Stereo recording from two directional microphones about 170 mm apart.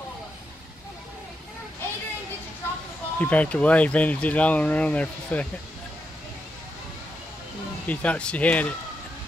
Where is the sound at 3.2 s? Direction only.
10° left (ahead or behind).